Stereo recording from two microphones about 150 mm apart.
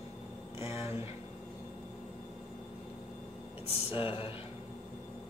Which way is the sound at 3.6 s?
40° left (ahead or behind).